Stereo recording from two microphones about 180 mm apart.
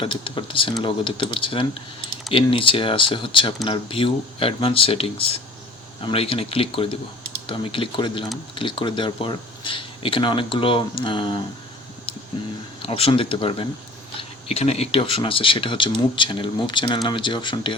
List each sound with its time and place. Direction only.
0.0 s speech: 30° left (ahead or behind)
12.8 s speech: 30° left (ahead or behind)